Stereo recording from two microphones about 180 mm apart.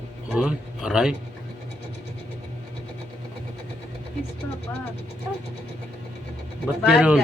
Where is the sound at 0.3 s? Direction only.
5° right (ahead or behind).